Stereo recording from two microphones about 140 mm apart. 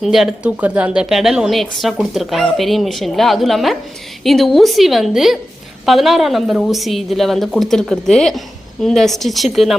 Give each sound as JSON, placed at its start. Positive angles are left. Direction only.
{"t": 0.0, "sound": "speech", "side_deg": 0}